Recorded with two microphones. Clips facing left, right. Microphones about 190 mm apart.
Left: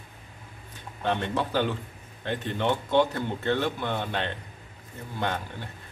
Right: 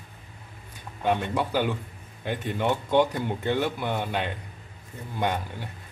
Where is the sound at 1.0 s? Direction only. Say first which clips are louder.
Right 2 dB; 10° right (ahead or behind).